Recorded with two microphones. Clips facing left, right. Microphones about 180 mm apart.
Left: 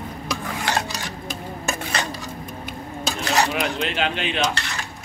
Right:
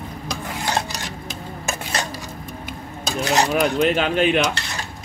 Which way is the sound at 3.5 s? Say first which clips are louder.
Right 6 dB; 45° right (ahead or behind).